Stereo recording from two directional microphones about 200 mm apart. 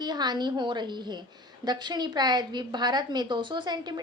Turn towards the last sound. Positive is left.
turn(degrees=-20)  # may be behind; listen again after turning